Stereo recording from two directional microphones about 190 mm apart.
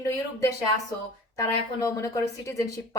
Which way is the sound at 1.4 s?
15° left (ahead or behind).